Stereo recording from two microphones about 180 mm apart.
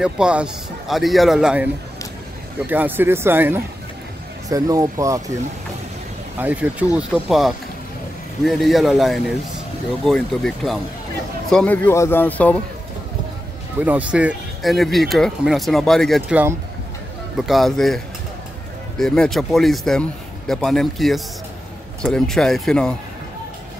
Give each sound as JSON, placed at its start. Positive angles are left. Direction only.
{"t": 0.0, "sound": "speech", "side_deg": -5}
{"t": 6.4, "sound": "speech", "side_deg": -5}
{"t": 13.7, "sound": "speech", "side_deg": -10}
{"t": 17.4, "sound": "speech", "side_deg": 0}